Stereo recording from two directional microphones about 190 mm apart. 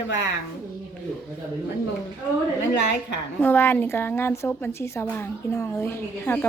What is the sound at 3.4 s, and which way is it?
A woman's voice, 10° left (ahead or behind).